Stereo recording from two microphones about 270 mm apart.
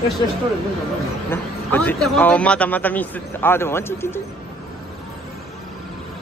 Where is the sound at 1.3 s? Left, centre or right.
Centre.